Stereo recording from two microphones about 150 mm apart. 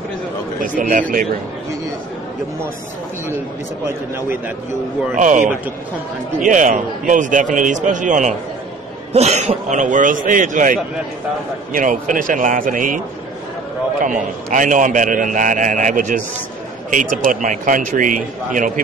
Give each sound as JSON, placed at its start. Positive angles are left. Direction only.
{"t": 0.6, "sound": "a man's voice", "side_deg": -60}
{"t": 5.1, "sound": "a man's voice", "side_deg": -55}
{"t": 14.0, "sound": "a man's voice", "side_deg": -60}